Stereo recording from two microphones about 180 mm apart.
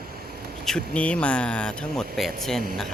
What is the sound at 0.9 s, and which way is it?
Speech, 5° left (ahead or behind).